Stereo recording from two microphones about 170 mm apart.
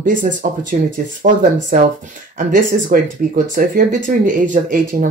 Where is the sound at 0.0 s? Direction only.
50° right (ahead or behind).